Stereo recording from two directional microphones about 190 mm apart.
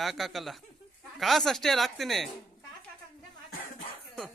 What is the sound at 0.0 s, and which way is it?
Speech, centre (ahead or behind).